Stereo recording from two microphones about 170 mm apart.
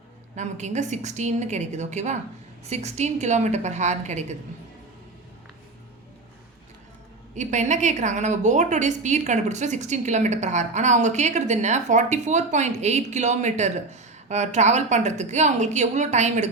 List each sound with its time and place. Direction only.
0.3 s a woman's voice: 45° right (ahead or behind)
7.3 s a woman's voice: 45° right (ahead or behind)